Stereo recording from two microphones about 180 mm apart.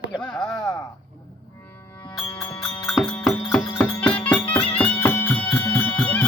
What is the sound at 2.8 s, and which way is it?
Music, 5° left (ahead or behind).